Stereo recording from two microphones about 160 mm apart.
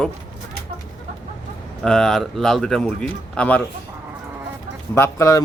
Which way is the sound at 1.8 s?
5° left (ahead or behind).